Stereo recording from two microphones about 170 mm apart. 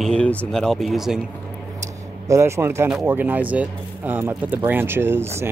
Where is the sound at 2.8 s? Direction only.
10° right (ahead or behind).